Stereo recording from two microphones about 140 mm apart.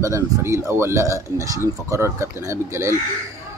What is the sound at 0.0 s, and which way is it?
Speech, 20° right (ahead or behind).